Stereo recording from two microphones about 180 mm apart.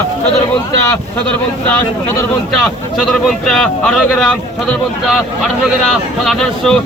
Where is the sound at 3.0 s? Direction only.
Centre (ahead or behind).